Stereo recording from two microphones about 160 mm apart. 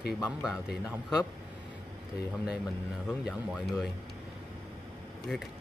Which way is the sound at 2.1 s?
90° left.